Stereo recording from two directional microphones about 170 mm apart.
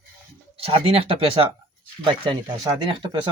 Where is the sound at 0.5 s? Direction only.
35° right (ahead or behind).